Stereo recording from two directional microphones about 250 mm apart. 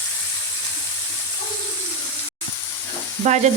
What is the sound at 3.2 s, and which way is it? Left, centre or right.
Stir, right.